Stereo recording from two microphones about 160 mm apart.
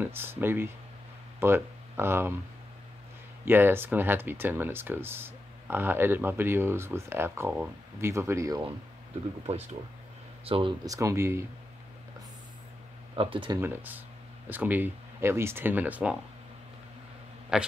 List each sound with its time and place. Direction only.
0.0 s speech: 15° right (ahead or behind)
3.4 s speech: 15° right (ahead or behind)
10.4 s speech: 35° right (ahead or behind)
10.9 s speech: 20° right (ahead or behind)
13.1 s speech: 30° right (ahead or behind)
13.6 s speech: 10° right (ahead or behind)
17.5 s a man's voice: 5° right (ahead or behind)